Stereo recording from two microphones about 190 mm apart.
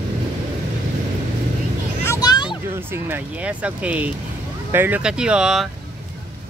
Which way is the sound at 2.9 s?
10° right (ahead or behind).